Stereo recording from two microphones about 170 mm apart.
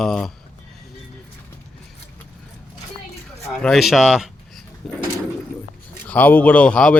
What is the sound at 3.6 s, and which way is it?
Speech, centre (ahead or behind).